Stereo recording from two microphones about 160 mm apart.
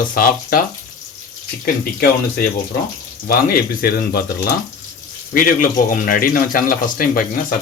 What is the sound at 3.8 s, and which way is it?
Speech, 70° left (ahead or behind).